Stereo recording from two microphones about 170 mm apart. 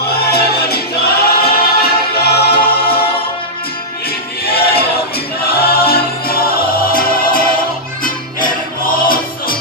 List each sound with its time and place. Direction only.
0.0 s choir: 70° left (ahead or behind)
2.6 s music: 60° left (ahead or behind)
4.5 s choir: 65° left (ahead or behind)
5.4 s music: 65° left (ahead or behind)